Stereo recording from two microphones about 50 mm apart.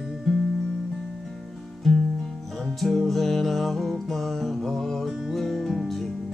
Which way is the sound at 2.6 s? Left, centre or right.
Centre.